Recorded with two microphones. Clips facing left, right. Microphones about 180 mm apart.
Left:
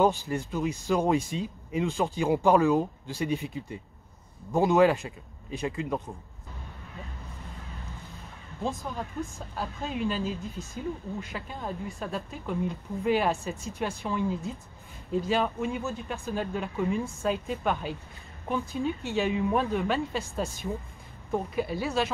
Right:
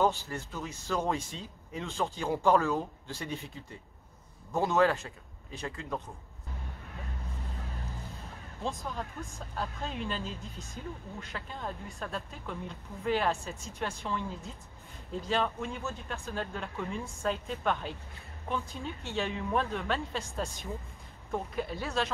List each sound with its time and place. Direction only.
0.0 s speech: 15° left (ahead or behind)
8.6 s speech: 5° left (ahead or behind)